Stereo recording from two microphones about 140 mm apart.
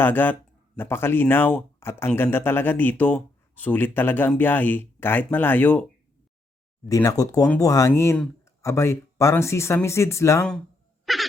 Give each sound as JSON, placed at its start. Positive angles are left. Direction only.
{"t": 0.0, "sound": "speech", "side_deg": 15}
{"t": 6.8, "sound": "speech", "side_deg": 25}
{"t": 11.0, "sound": "hiccup", "side_deg": 0}